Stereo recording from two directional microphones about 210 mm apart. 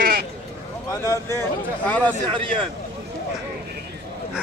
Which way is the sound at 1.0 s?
15° left (ahead or behind).